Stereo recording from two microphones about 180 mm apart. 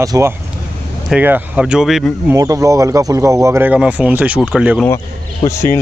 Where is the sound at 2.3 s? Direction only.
15° right (ahead or behind).